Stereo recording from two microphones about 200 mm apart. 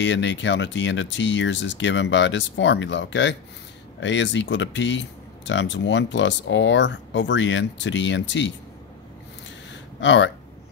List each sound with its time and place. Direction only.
0.0 s speech: 65° left (ahead or behind)
9.9 s speech: 65° left (ahead or behind)